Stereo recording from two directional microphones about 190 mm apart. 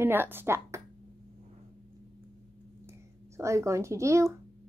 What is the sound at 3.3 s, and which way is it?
Speech, 15° right (ahead or behind).